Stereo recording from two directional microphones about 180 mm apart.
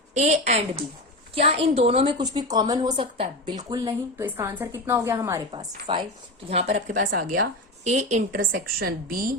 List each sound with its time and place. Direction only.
0.1 s a woman's voice: 40° right (ahead or behind); by 5.4 s 15° right (ahead or behind)
5.5 s a woman's voice: 30° right (ahead or behind); by 7.4 s 60° right (ahead or behind)
7.9 s a woman's voice: 40° right (ahead or behind)
8.4 s a woman's voice: 60° right (ahead or behind)